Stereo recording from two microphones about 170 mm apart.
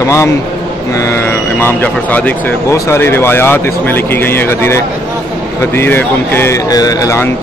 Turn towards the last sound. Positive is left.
turn(degrees=20)  # may be behind; listen again after turning